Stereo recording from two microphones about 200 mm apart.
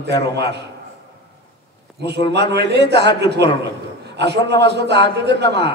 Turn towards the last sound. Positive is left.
turn(degrees=-55)  # may be behind; listen again after turning